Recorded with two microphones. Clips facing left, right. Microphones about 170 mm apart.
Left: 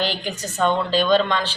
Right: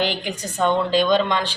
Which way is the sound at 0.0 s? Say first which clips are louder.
Right 1 dB; 15° right (ahead or behind).